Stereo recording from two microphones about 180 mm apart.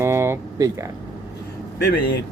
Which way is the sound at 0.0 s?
15° right (ahead or behind).